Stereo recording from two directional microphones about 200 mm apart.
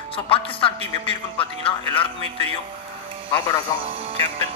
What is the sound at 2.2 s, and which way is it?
Speech, 30° right (ahead or behind).